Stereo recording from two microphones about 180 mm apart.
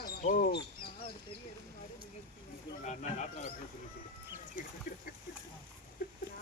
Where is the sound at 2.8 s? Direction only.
40° left (ahead or behind).